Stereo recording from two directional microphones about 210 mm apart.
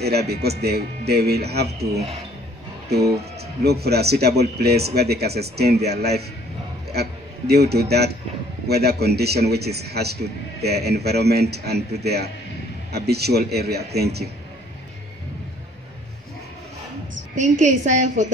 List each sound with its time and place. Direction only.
0.0 s speech: 50° right (ahead or behind)
3.6 s a man's voice: 50° right (ahead or behind)
17.4 s a woman's voice: 35° right (ahead or behind)